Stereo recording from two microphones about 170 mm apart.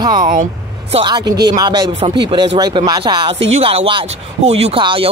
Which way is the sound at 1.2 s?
75° right (ahead or behind).